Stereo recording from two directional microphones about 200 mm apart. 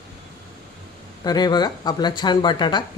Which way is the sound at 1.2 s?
20° left (ahead or behind).